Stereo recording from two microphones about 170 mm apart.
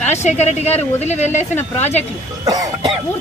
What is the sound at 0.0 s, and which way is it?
A woman's voice, 40° left (ahead or behind).